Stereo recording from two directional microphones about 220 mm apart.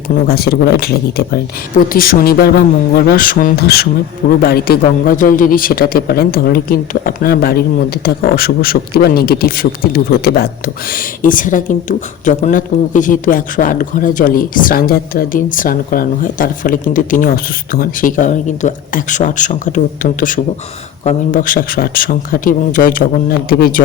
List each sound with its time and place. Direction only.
0.3 s a man's voice: 45° left (ahead or behind)